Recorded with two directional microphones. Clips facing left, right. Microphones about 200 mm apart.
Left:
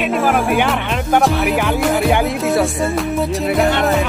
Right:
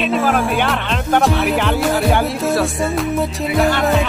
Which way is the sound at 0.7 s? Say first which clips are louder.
Left 1 dB; 10° left (ahead or behind).